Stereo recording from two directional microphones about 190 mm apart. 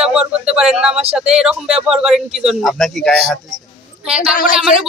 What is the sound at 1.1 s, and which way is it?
A man's voice, 5° right (ahead or behind).